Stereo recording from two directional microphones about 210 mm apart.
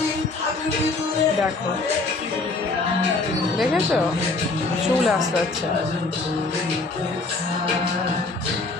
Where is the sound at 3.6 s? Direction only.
Centre (ahead or behind).